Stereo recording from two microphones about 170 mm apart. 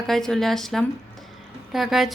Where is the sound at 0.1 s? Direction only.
Centre (ahead or behind).